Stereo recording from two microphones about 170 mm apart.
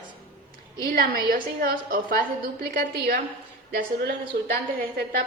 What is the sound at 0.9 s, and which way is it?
A woman's voice, 65° right (ahead or behind).